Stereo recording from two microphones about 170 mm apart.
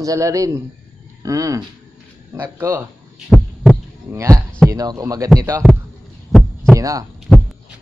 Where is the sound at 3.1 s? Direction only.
Centre (ahead or behind).